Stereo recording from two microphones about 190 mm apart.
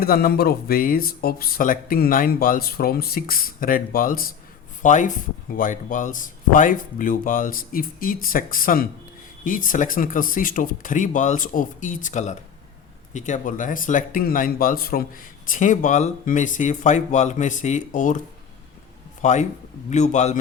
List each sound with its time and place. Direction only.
0.0 s a man's voice: 50° left (ahead or behind)
19.2 s a man's voice: 40° left (ahead or behind)